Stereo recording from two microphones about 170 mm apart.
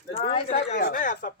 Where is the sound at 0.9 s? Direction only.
50° left (ahead or behind).